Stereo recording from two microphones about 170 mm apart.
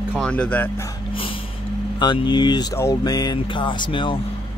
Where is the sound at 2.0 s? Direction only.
25° left (ahead or behind).